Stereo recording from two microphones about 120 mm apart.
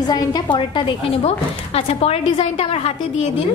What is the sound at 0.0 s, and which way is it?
Speech, 35° left (ahead or behind).